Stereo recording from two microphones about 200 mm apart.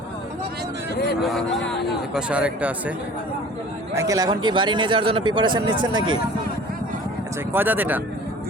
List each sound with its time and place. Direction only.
1.2 s speech: centre (ahead or behind)
3.9 s a man's voice: 15° right (ahead or behind)
7.5 s speech: 10° right (ahead or behind)